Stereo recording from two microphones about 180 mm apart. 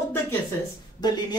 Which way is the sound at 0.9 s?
20° left (ahead or behind).